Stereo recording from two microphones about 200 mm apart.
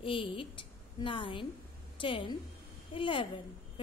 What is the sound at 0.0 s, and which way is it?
A woman's voice, 25° left (ahead or behind).